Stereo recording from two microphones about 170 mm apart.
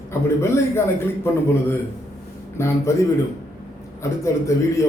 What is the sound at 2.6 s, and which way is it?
Speech, 15° left (ahead or behind).